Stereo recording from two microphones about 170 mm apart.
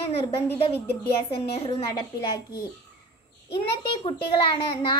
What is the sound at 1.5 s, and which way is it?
Speech, 30° left (ahead or behind).